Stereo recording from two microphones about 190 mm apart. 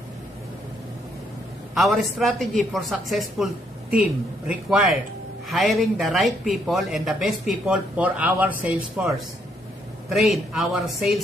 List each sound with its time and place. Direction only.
1.8 s speech: centre (ahead or behind)
4.5 s speech: 5° right (ahead or behind)